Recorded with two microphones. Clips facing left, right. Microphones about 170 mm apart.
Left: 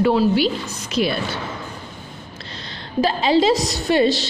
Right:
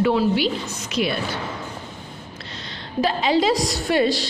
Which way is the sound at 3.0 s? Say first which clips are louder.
Left 3 dB; 30° left (ahead or behind).